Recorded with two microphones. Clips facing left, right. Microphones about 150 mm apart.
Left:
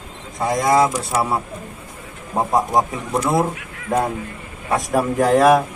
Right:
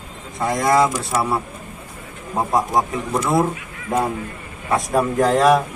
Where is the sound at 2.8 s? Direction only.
15° left (ahead or behind).